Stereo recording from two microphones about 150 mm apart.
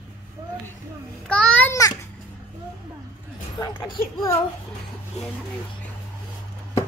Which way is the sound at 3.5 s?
25° left (ahead or behind).